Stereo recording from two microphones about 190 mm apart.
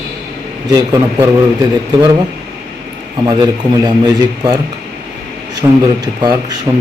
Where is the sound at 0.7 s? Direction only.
15° right (ahead or behind).